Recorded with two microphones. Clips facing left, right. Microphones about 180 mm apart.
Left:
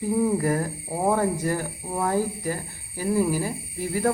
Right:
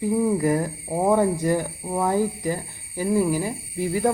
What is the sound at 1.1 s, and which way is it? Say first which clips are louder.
A woman's voice: right 6 dB; 15° right (ahead or behind).